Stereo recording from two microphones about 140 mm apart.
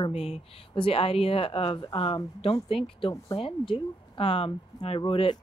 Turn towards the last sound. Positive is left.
turn(degrees=40)  # may be behind; listen again after turning